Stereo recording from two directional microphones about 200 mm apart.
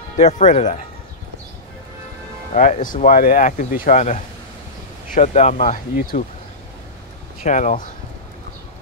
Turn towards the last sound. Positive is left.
turn(degrees=40)  # may be behind; listen again after turning